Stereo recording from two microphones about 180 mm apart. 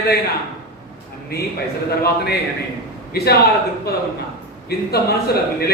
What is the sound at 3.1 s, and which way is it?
Speech, 65° left (ahead or behind).